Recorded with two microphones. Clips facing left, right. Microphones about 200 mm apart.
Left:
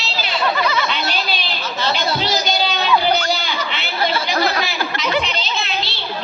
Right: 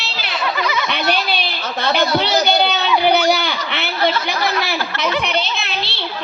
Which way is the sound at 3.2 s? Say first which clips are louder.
Right 4 dB; 60° right (ahead or behind).